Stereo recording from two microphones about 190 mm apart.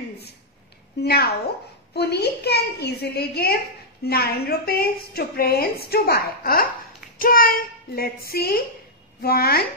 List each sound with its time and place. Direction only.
1.0 s a woman's voice: 55° left (ahead or behind)